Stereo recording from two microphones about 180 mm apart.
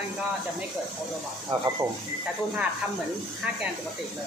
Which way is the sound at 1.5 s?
35° right (ahead or behind).